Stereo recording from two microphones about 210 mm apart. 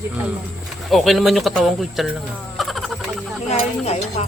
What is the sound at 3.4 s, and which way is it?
Speech, 30° left (ahead or behind).